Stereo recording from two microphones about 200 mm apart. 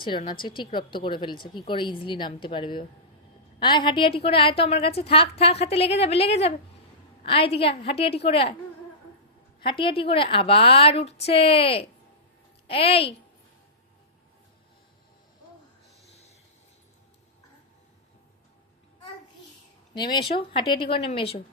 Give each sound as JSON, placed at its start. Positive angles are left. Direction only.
{"t": 0.0, "sound": "a woman's voice", "side_deg": 25}
{"t": 9.6, "sound": "speech", "side_deg": 25}
{"t": 19.9, "sound": "speech", "side_deg": 25}